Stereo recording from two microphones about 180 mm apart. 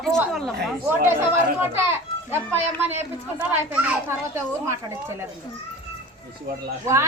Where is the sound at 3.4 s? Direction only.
5° right (ahead or behind).